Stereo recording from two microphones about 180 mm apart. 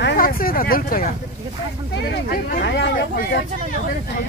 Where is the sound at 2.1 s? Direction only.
60° left (ahead or behind).